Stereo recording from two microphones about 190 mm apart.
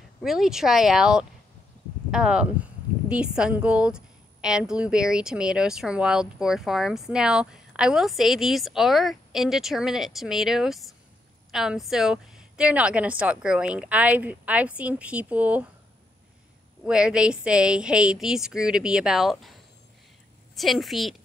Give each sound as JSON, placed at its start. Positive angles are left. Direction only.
{"t": 0.2, "sound": "a woman's voice", "side_deg": 0}
{"t": 16.8, "sound": "a woman's voice", "side_deg": -5}
{"t": 20.5, "sound": "a woman's voice", "side_deg": 0}